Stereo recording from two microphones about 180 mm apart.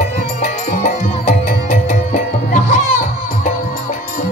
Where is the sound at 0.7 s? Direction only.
40° left (ahead or behind).